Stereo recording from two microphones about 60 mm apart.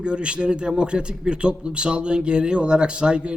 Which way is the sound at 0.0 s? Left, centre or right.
Centre.